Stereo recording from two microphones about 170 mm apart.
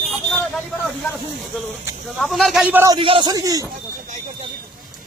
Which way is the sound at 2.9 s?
30° right (ahead or behind).